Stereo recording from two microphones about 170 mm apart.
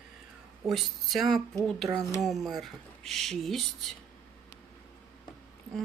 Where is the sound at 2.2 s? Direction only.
Centre (ahead or behind).